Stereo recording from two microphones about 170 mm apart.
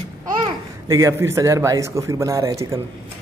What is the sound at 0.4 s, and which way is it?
A child's voice, 20° right (ahead or behind).